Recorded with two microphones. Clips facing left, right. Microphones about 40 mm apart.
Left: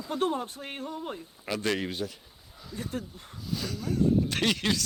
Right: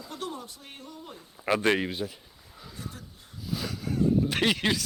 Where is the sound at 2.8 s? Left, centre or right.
Left.